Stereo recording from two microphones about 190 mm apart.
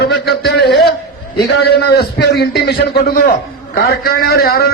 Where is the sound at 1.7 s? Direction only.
60° left (ahead or behind).